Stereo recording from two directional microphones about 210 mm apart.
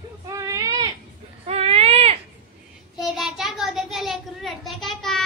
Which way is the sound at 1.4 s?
30° right (ahead or behind).